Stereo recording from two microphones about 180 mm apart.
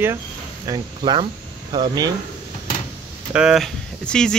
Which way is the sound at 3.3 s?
5° right (ahead or behind).